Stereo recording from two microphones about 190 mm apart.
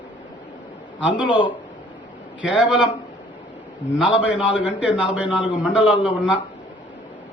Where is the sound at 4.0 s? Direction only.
5° right (ahead or behind).